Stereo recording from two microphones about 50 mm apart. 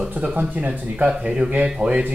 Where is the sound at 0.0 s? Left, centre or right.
Right.